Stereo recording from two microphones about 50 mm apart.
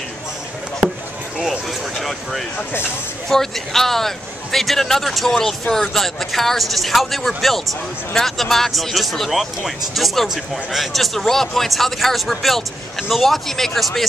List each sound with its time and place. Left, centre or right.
2.0 s a man's voice: centre